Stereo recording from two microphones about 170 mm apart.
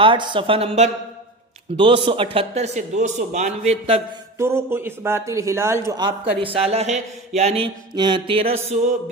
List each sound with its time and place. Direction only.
0.0 s mantra: 30° right (ahead or behind)
4.4 s a man's voice: 15° right (ahead or behind)
6.4 s mantra: 35° right (ahead or behind)